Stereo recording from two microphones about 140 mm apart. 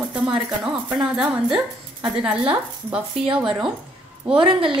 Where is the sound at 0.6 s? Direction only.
5° right (ahead or behind).